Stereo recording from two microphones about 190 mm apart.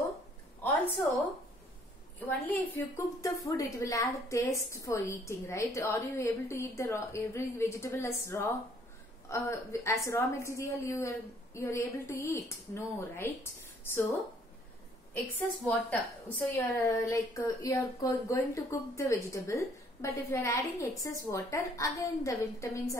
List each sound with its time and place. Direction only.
2.2 s a woman's voice: 10° left (ahead or behind)
15.6 s a woman's voice: 10° left (ahead or behind)